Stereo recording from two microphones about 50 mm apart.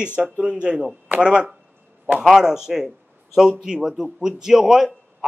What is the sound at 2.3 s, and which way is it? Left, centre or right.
A man's voice, centre.